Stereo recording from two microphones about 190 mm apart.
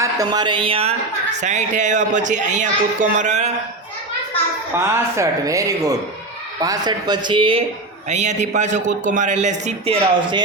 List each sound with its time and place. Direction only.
0.0 s speech: 20° right (ahead or behind); by 3.5 s 40° right (ahead or behind)
4.7 s speech: 10° right (ahead or behind)
8.1 s speech: 40° right (ahead or behind)